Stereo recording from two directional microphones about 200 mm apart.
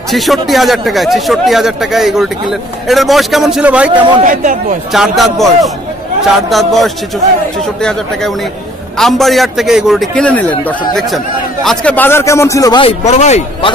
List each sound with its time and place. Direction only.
0.1 s speech: centre (ahead or behind)
3.9 s a man's voice: 25° right (ahead or behind)
4.2 s speech: 40° right (ahead or behind)
4.9 s speech: centre (ahead or behind)
8.9 s speech: centre (ahead or behind)
11.6 s a man's voice: 5° left (ahead or behind); by 12.9 s 20° left (ahead or behind)
13.0 s speech: 35° left (ahead or behind)